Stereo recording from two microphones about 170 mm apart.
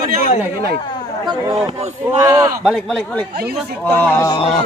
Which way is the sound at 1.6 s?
40° right (ahead or behind).